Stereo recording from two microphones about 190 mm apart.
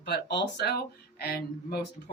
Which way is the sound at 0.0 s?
60° left (ahead or behind).